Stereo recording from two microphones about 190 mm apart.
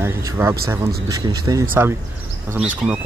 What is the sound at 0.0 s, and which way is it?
Speech, 15° right (ahead or behind).